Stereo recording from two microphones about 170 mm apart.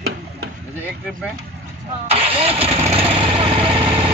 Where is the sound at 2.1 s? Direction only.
35° right (ahead or behind).